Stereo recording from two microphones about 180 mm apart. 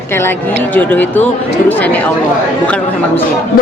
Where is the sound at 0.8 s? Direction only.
10° left (ahead or behind).